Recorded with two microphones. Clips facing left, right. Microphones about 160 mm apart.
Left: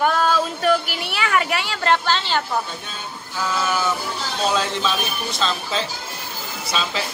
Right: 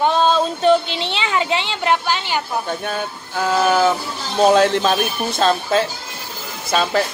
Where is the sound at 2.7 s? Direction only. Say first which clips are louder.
Right 10 dB; 60° right (ahead or behind).